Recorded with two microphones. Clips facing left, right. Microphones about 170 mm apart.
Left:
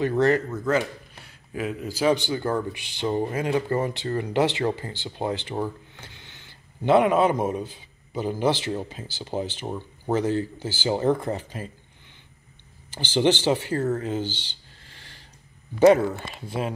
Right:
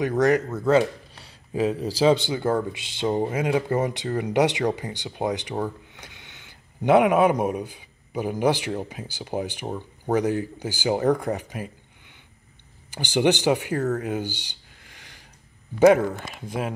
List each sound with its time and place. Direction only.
0.0 s a man's voice: 15° right (ahead or behind)
0.7 s speech: 30° right (ahead or behind)
2.0 s a man's voice: 25° right (ahead or behind)
5.9 s a sound: 15° right (ahead or behind)
6.8 s a man's voice: 15° right (ahead or behind)
12.9 s a man's voice: 15° right (ahead or behind)
13.9 s a sound: 15° right (ahead or behind)
16.3 s a man's voice: 10° right (ahead or behind)